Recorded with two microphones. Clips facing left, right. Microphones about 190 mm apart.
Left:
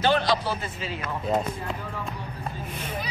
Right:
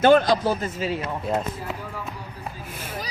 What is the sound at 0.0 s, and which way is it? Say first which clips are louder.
Speech: right 6 dB; 45° right (ahead or behind).